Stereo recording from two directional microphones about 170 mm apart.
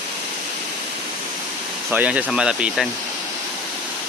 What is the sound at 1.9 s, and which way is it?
Speech, 10° right (ahead or behind).